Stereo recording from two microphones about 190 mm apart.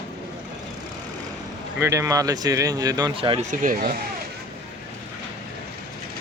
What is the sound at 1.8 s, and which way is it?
Speech, 15° right (ahead or behind).